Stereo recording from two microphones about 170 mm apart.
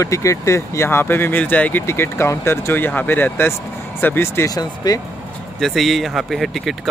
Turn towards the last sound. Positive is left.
turn(degrees=0)  # may be behind; listen again after turning